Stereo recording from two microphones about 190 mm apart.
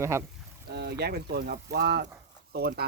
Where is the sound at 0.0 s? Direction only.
15° right (ahead or behind).